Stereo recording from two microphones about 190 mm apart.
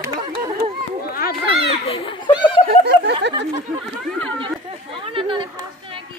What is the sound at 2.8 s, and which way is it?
Snicker, 60° right (ahead or behind).